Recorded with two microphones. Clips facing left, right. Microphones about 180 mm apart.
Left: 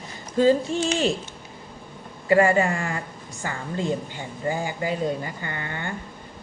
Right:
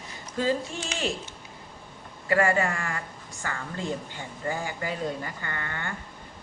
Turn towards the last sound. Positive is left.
turn(degrees=20)  # may be behind; listen again after turning